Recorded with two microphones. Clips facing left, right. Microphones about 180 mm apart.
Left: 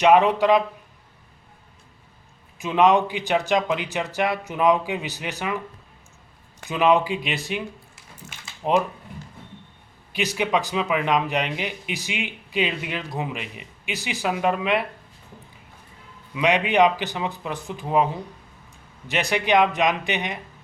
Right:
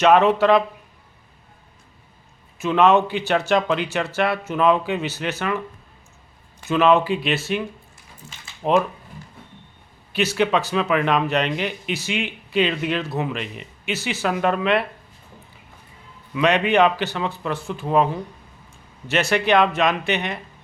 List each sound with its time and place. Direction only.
0.0 s a man's voice: 15° left (ahead or behind)
2.6 s a man's voice: 15° left (ahead or behind)
6.7 s a man's voice: 15° left (ahead or behind)
10.1 s a man's voice: 15° left (ahead or behind)
16.3 s a man's voice: 15° left (ahead or behind)